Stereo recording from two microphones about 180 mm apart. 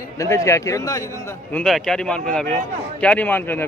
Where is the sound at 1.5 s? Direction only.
5° left (ahead or behind).